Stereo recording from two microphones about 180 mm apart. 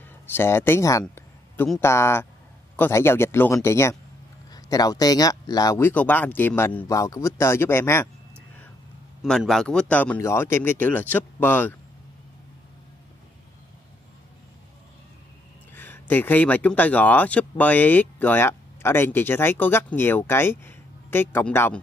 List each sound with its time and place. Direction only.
0.3 s speech: 10° left (ahead or behind)
1.0 s a sound: 10° left (ahead or behind)
1.8 s speech: 15° left (ahead or behind)
9.2 s speech: centre (ahead or behind)
15.7 s speech: 10° left (ahead or behind)